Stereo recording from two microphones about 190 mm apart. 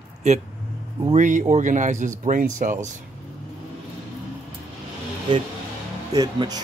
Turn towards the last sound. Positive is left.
turn(degrees=-20)  # may be behind; listen again after turning